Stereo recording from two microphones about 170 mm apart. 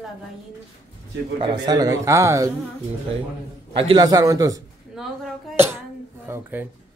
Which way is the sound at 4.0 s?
20° right (ahead or behind).